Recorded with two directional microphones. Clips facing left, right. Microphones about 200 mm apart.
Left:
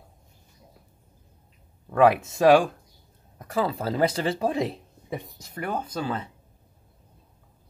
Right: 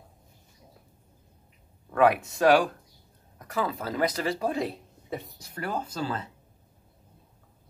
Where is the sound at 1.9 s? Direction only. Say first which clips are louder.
Left 3 dB; 25° left (ahead or behind).